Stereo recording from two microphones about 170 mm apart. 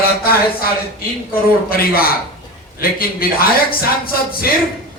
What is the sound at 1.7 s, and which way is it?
Speech, 60° left (ahead or behind).